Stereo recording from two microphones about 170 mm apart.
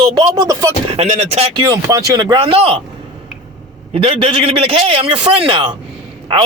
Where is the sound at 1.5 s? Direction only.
20° right (ahead or behind).